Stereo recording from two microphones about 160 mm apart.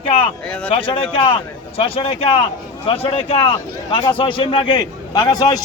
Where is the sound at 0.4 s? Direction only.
5° left (ahead or behind).